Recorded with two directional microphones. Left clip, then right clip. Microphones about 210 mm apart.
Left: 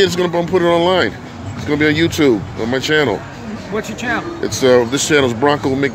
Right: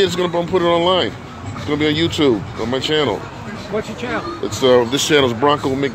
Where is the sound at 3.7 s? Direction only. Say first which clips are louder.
Left 1 dB; 45° left (ahead or behind).